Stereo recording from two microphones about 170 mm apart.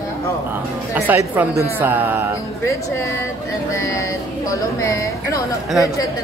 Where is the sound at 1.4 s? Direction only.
10° right (ahead or behind).